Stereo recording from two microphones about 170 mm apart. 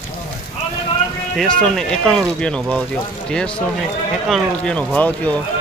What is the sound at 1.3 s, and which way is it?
Speech, 5° left (ahead or behind).